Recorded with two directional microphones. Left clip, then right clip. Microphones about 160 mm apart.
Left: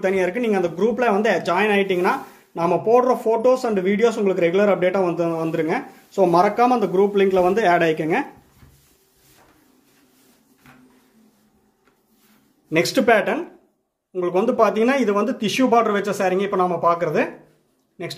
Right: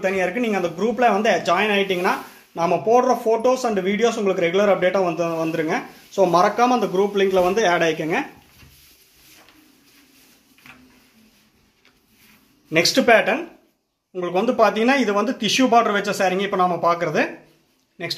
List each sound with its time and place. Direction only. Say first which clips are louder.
0.0 s speech: left 1 dB; 25° left (ahead or behind)
12.6 s a man's voice: right 1 dB; 15° left (ahead or behind)